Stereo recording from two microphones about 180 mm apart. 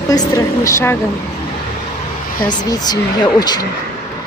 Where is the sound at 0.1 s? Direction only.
20° left (ahead or behind).